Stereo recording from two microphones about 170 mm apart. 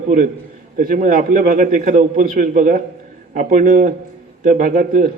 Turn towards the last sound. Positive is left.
turn(degrees=-55)  # may be behind; listen again after turning